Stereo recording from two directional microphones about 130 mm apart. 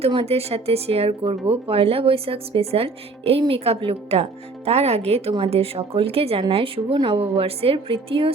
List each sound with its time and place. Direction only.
0.0 s speech: 50° right (ahead or behind)